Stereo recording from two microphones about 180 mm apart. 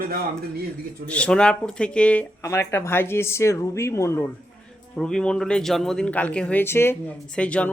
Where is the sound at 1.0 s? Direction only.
5° left (ahead or behind).